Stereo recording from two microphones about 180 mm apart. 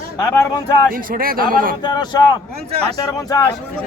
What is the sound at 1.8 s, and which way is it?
A man's voice, 25° left (ahead or behind).